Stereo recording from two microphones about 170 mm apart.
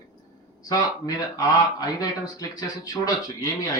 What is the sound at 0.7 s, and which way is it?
Speech, 20° left (ahead or behind).